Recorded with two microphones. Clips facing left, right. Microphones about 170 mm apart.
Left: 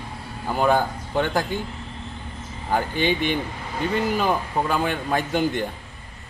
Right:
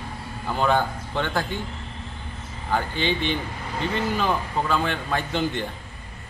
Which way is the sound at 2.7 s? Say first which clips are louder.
Left 2 dB; 15° left (ahead or behind).